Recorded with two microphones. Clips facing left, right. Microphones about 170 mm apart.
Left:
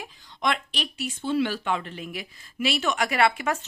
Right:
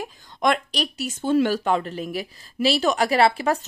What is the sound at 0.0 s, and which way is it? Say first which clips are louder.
Speech: right 6 dB; 45° right (ahead or behind).